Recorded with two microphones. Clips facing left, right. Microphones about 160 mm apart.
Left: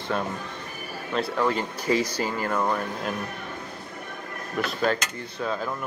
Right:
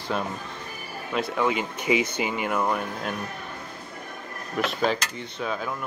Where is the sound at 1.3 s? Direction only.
5° right (ahead or behind).